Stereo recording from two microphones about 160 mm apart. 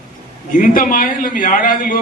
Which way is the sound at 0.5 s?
60° left (ahead or behind).